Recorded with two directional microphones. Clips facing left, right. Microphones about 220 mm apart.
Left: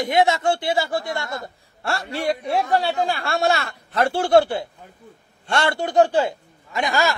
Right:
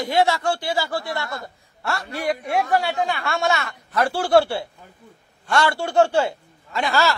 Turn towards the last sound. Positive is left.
turn(degrees=15)  # may be behind; listen again after turning